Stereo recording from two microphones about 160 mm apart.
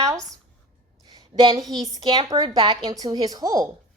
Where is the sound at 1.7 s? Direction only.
25° right (ahead or behind).